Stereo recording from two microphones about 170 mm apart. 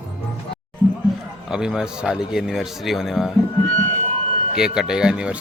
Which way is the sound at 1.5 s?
5° right (ahead or behind).